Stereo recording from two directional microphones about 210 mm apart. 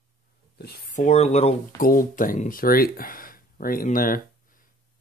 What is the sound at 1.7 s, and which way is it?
Speech, 40° left (ahead or behind).